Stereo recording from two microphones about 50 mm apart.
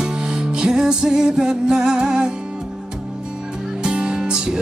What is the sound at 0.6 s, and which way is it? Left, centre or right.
Music, centre.